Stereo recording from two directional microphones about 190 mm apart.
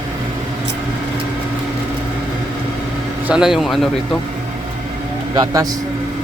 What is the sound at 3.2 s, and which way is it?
Speech, 5° right (ahead or behind).